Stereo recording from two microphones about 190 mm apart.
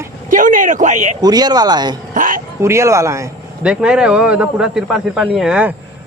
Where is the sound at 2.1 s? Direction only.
45° right (ahead or behind).